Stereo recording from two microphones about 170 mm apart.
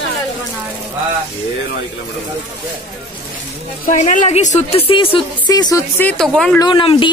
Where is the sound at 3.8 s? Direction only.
45° left (ahead or behind); by 6.6 s 5° left (ahead or behind).